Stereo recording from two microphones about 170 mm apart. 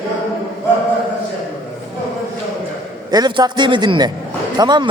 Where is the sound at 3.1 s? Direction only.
25° right (ahead or behind).